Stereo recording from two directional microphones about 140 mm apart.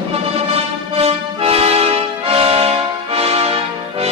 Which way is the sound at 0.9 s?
45° right (ahead or behind).